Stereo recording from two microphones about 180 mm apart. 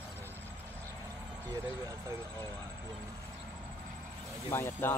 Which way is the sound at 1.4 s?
20° right (ahead or behind).